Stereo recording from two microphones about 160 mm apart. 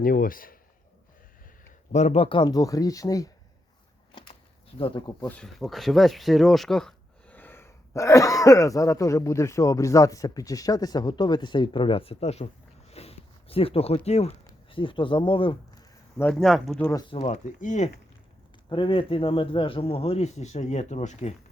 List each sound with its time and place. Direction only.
0.0 s a man's voice: 60° left (ahead or behind)
1.9 s speech: 45° left (ahead or behind); by 3.2 s 20° left (ahead or behind)
4.8 s speech: 30° left (ahead or behind)
5.3 s speech: 5° left (ahead or behind); by 12.5 s 40° left (ahead or behind)
12.9 s a sound: 40° left (ahead or behind)
14.7 s speech: 30° left (ahead or behind)
16.3 s speech: centre (ahead or behind)
17.1 s speech: 40° left (ahead or behind)
18.7 s speech: 30° left (ahead or behind)